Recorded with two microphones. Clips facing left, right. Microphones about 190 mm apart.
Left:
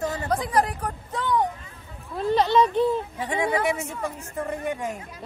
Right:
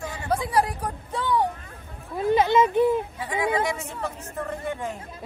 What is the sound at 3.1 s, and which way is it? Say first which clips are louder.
Speech: left 2 dB; 25° left (ahead or behind).